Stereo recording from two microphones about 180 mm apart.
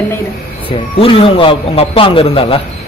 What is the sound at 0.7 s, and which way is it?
Speech, 30° left (ahead or behind).